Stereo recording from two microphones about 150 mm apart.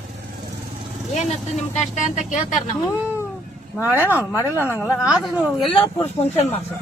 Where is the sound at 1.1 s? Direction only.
50° left (ahead or behind).